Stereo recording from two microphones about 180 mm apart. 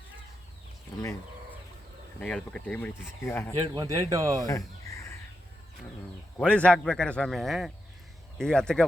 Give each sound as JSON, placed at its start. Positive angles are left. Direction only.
{"t": 2.2, "sound": "speech", "side_deg": 5}
{"t": 3.6, "sound": "speech", "side_deg": -20}
{"t": 4.4, "sound": "crow", "side_deg": 15}
{"t": 6.3, "sound": "a man's voice", "side_deg": 5}